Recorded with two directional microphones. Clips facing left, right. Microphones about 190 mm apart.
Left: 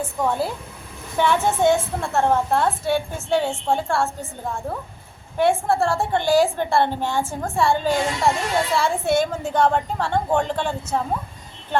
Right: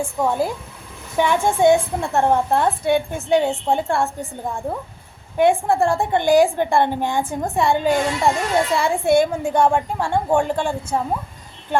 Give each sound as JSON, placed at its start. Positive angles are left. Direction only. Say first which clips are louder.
{"t": 0.0, "sound": "a woman's voice", "louder": "right 2 dB", "side_deg": -10}